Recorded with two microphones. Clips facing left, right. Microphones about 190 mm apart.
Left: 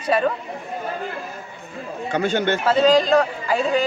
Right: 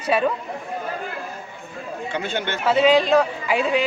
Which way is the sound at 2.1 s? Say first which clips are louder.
Left 7 dB; 45° left (ahead or behind).